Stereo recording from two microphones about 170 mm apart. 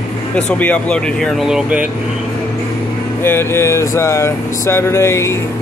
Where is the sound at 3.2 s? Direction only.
15° left (ahead or behind).